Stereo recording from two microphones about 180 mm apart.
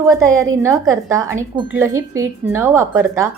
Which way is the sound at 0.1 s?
15° right (ahead or behind).